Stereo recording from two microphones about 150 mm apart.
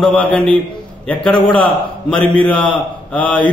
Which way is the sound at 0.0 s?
10° left (ahead or behind).